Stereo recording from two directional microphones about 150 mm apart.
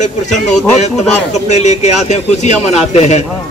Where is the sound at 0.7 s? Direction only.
50° left (ahead or behind).